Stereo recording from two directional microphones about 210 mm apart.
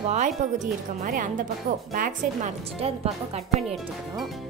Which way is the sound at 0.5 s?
40° right (ahead or behind).